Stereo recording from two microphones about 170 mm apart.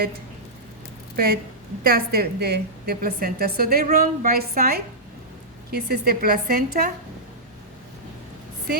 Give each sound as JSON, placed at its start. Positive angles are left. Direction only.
{"t": 1.1, "sound": "a woman's voice", "side_deg": -65}